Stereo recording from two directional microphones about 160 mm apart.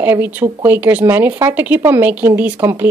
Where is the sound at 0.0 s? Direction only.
10° right (ahead or behind).